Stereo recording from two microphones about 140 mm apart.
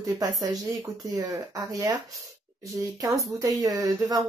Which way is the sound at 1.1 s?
25° right (ahead or behind).